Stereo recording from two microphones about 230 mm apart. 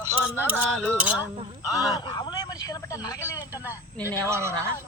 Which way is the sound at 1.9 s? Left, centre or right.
Centre.